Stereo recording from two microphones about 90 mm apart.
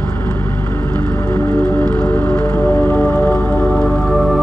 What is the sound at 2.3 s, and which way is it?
Music, 40° left (ahead or behind).